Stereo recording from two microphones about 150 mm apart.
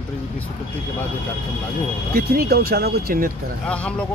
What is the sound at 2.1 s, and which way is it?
Speech, 75° right (ahead or behind).